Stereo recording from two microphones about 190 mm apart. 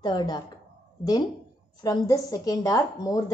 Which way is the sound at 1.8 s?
20° left (ahead or behind).